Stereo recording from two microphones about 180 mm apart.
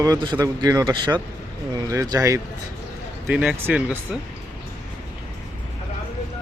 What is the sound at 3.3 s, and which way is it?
Speech, 5° right (ahead or behind).